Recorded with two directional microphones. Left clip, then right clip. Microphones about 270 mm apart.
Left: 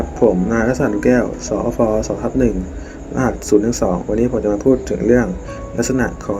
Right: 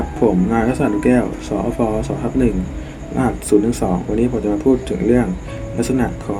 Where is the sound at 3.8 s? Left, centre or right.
Centre.